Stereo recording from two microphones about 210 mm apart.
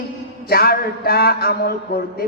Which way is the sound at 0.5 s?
45° left (ahead or behind).